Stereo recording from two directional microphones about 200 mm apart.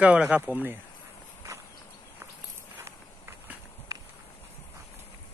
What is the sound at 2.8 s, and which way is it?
Walk, 15° right (ahead or behind).